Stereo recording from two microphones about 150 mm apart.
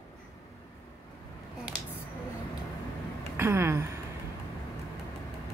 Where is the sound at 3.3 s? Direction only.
15° right (ahead or behind).